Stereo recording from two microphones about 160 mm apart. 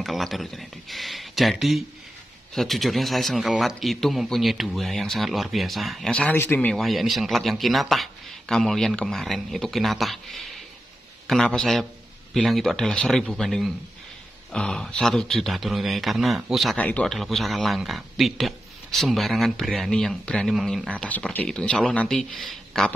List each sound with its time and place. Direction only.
0.0 s speech: centre (ahead or behind)